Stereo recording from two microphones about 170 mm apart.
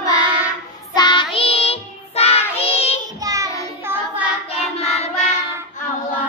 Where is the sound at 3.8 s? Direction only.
15° right (ahead or behind).